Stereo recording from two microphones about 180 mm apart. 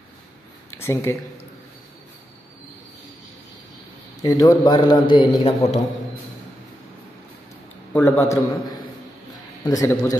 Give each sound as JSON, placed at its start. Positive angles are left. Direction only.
{"t": 0.7, "sound": "speech", "side_deg": 15}
{"t": 4.2, "sound": "a man's voice", "side_deg": 20}
{"t": 7.9, "sound": "a man's voice", "side_deg": 15}